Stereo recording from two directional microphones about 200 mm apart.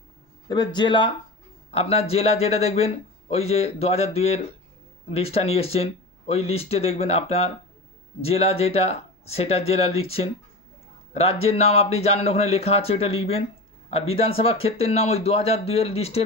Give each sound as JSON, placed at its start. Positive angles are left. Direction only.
{"t": 0.4, "sound": "a man's voice", "side_deg": 20}